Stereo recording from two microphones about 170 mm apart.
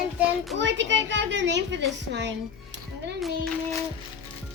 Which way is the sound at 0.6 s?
90° right.